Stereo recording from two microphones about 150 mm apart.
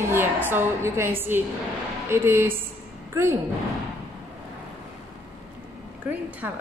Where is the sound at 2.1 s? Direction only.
15° right (ahead or behind).